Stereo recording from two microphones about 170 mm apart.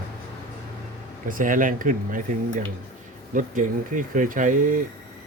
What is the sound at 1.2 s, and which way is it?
Speech, 50° right (ahead or behind).